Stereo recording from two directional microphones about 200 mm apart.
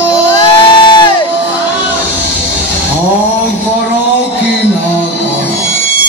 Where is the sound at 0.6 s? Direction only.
25° left (ahead or behind).